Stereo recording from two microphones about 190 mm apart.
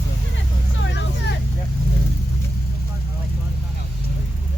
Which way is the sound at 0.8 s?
70° left (ahead or behind).